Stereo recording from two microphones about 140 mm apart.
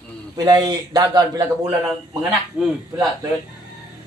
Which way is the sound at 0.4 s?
30° right (ahead or behind).